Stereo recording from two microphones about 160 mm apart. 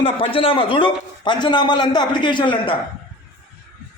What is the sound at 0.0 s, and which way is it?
A man's voice, 35° left (ahead or behind).